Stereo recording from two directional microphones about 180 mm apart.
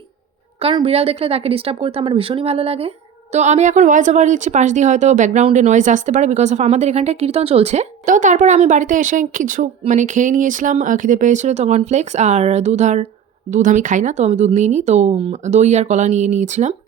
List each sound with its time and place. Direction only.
0.6 s speech: 30° right (ahead or behind)